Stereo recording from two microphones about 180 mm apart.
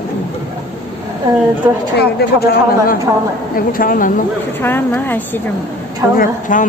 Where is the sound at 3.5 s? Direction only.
50° left (ahead or behind).